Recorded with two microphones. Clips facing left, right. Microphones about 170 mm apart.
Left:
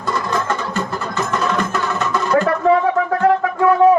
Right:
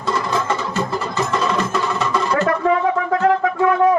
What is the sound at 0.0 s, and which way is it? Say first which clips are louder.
Music: even; centre (ahead or behind).